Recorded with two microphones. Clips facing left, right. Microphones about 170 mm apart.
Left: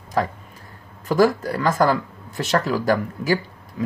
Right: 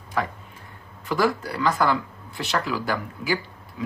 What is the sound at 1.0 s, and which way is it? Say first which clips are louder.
Speech: left 6 dB; 45° left (ahead or behind).